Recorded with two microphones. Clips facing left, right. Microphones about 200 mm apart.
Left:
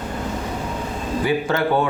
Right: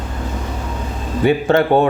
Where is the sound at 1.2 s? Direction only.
25° right (ahead or behind).